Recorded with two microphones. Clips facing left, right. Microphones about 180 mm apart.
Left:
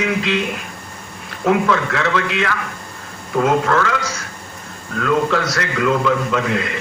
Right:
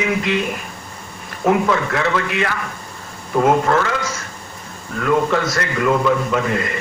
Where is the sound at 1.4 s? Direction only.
70° left (ahead or behind).